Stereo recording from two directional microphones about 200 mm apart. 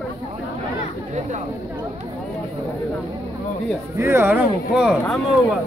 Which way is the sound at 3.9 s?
10° right (ahead or behind).